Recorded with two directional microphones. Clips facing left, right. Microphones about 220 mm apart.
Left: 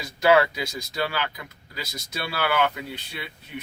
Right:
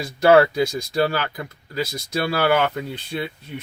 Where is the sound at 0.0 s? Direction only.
50° right (ahead or behind).